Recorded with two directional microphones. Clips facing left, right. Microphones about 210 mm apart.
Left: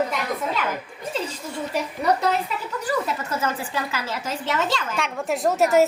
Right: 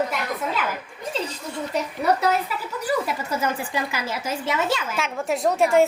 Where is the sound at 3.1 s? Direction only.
10° right (ahead or behind).